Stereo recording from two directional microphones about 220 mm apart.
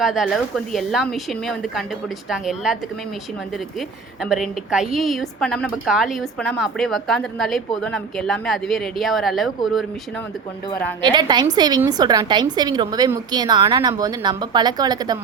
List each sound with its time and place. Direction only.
0.0 s a woman's voice: centre (ahead or behind)
3.8 s a woman's voice: centre (ahead or behind)
11.0 s a woman's voice: 20° right (ahead or behind)